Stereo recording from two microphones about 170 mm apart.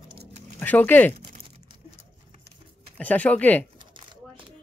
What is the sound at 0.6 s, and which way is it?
Speech, 10° left (ahead or behind).